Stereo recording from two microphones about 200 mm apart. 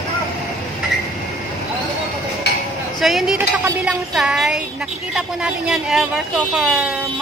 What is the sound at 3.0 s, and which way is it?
A woman's voice, centre (ahead or behind).